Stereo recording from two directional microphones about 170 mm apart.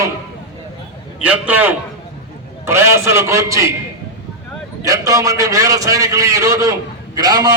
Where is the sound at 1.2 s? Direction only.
10° right (ahead or behind).